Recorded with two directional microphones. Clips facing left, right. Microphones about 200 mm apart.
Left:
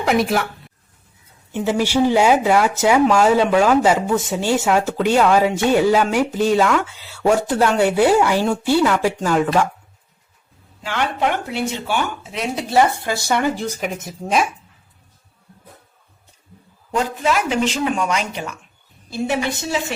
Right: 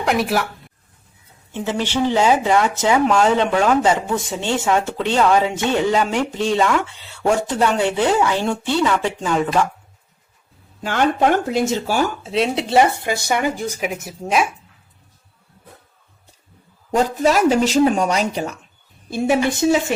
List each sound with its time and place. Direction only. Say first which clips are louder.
0.0 s speech: left 1 dB; centre (ahead or behind)
1.5 s speech: left 3 dB; 10° left (ahead or behind)
10.8 s speech: right 4 dB; 45° right (ahead or behind); by 14.4 s 5° right (ahead or behind)
16.9 s speech: right 3 dB; 40° right (ahead or behind)